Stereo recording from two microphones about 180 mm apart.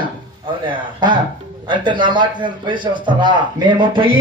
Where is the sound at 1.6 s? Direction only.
25° right (ahead or behind).